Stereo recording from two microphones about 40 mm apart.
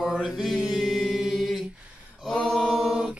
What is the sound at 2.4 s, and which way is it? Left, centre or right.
Mantra, centre.